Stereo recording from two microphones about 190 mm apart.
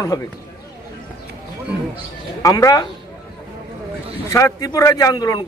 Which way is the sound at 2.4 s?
15° left (ahead or behind).